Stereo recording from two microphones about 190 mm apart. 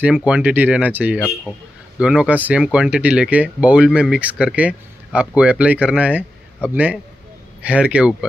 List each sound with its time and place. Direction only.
0.0 s speech: 5° right (ahead or behind)